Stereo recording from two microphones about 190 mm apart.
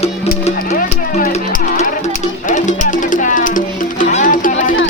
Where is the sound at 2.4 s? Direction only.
40° left (ahead or behind).